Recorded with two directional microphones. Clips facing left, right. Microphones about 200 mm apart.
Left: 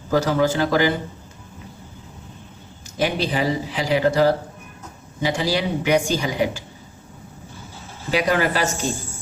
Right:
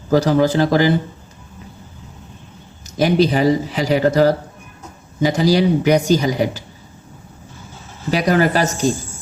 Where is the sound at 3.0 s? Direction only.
40° right (ahead or behind).